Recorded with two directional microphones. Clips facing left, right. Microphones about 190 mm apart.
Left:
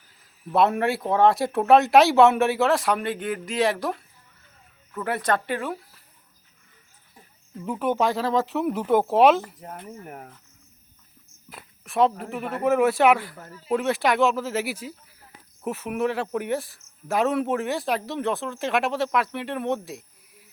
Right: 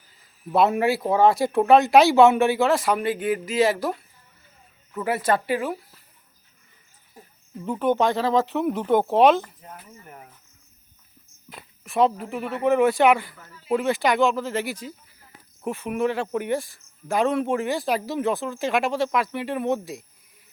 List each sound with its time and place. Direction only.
0.5 s speech: centre (ahead or behind)
4.9 s speech: 5° right (ahead or behind)
7.6 s speech: 5° left (ahead or behind)
9.9 s speech: 55° left (ahead or behind)
11.4 s a sound: centre (ahead or behind)
12.2 s speech: centre (ahead or behind)